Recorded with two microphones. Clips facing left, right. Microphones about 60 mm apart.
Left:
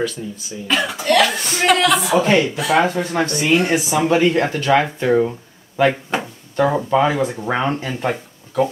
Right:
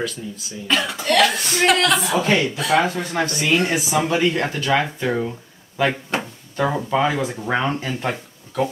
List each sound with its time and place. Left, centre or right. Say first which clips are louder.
0.0 s speech: left 4 dB; centre
4.1 s speech: left 4 dB; centre